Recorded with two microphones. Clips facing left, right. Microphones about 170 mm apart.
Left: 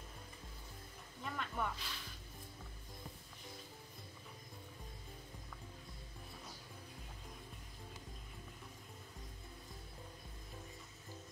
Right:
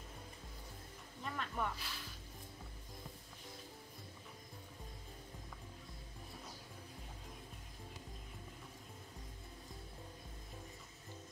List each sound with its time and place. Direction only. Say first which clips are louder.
1.2 s music: even; centre (ahead or behind)